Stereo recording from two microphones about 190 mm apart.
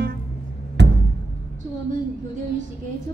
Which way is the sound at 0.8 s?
65° right (ahead or behind).